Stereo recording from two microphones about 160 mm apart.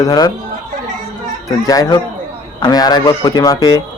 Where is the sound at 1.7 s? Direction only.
20° left (ahead or behind).